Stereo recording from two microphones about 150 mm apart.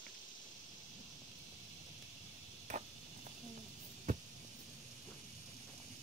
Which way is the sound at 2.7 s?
50° right (ahead or behind).